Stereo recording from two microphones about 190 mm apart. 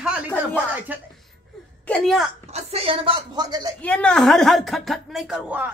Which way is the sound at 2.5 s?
30° right (ahead or behind).